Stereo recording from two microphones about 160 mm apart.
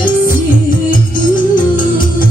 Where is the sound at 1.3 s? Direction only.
30° left (ahead or behind).